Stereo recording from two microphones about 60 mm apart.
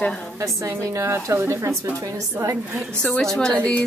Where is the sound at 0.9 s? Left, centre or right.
Right.